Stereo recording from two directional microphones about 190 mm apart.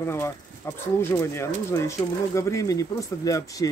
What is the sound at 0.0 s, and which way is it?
Speech, 15° left (ahead or behind).